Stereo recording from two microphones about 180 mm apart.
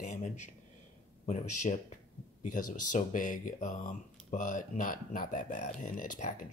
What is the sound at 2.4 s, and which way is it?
Speech, 45° left (ahead or behind).